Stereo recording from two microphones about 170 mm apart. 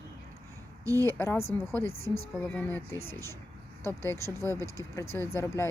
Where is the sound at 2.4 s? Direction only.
10° left (ahead or behind).